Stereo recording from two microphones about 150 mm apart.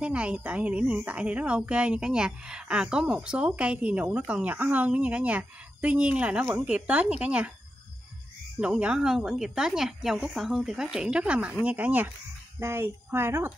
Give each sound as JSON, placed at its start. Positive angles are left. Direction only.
{"t": 0.0, "sound": "a woman's voice", "side_deg": -10}
{"t": 8.5, "sound": "a woman's voice", "side_deg": -5}